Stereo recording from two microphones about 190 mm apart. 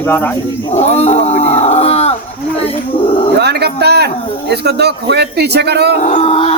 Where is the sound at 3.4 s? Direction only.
60° right (ahead or behind).